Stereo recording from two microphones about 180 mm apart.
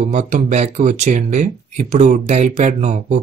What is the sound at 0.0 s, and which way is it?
Speech, 40° right (ahead or behind).